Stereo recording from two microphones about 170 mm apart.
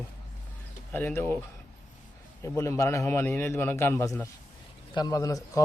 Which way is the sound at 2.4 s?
15° left (ahead or behind).